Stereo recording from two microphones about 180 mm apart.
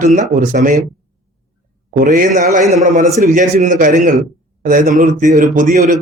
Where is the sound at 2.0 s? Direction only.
45° right (ahead or behind).